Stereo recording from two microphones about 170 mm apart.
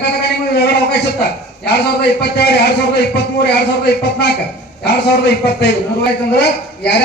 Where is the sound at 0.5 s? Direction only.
75° left (ahead or behind).